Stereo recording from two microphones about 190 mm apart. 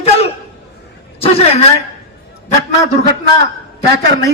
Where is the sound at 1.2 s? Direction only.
30° left (ahead or behind).